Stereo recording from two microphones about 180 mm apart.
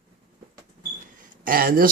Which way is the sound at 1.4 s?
55° right (ahead or behind).